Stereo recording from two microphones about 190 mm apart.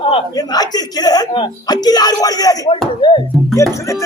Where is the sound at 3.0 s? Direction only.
25° left (ahead or behind).